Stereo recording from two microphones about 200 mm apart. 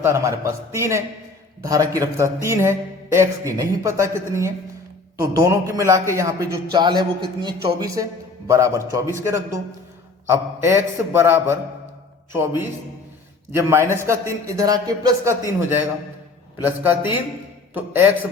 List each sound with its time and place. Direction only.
0.0 s speech: 15° right (ahead or behind)
16.6 s speech: 10° right (ahead or behind)